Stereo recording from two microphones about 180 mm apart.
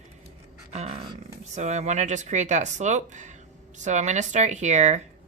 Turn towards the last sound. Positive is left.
turn(degrees=-40)  # may be behind; listen again after turning